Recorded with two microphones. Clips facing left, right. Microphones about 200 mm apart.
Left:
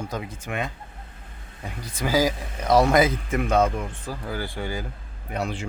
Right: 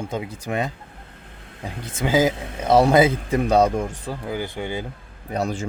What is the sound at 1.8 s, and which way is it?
Speech, 25° right (ahead or behind).